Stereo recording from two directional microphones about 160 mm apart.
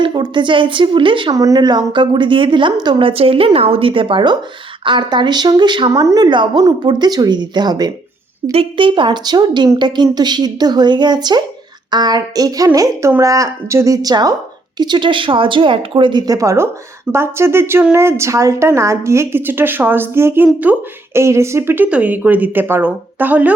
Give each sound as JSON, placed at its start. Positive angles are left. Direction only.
{"t": 0.0, "sound": "a woman's voice", "side_deg": -30}